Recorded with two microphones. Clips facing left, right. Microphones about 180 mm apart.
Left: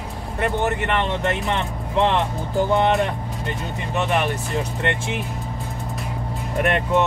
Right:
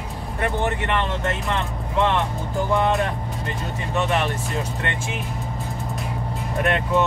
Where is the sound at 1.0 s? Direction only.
20° left (ahead or behind).